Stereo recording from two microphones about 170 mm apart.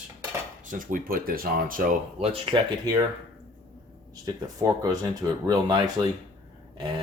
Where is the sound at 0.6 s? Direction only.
50° right (ahead or behind).